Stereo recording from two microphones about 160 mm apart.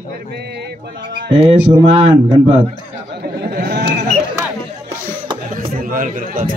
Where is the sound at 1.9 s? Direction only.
35° right (ahead or behind).